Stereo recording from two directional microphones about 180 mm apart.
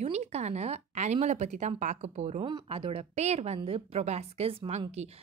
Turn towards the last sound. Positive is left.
turn(degrees=-35)  # may be behind; listen again after turning